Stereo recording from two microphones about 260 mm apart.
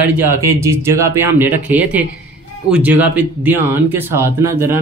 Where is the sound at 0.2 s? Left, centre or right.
Centre.